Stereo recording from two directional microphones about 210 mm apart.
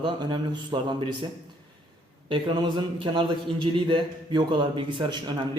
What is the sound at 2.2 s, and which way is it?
A man's voice, 20° right (ahead or behind).